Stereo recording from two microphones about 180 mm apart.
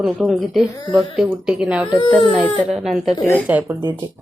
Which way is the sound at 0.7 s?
20° left (ahead or behind).